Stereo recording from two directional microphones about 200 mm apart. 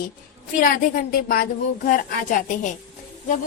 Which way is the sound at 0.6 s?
40° left (ahead or behind).